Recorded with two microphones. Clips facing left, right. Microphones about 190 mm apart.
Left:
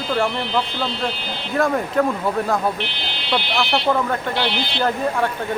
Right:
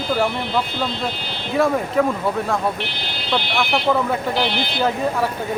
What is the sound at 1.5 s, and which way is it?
Speech, centre (ahead or behind).